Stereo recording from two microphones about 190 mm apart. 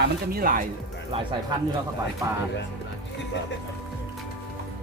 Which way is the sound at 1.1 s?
25° right (ahead or behind).